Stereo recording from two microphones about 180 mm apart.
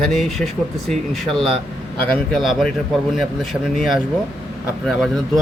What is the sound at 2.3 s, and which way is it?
Speech, centre (ahead or behind).